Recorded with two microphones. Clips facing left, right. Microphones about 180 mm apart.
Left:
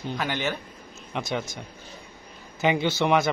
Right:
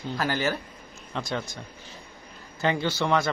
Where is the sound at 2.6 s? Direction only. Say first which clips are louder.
Left 3 dB; 15° left (ahead or behind).